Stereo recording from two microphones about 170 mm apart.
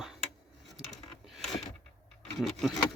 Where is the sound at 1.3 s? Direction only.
Centre (ahead or behind).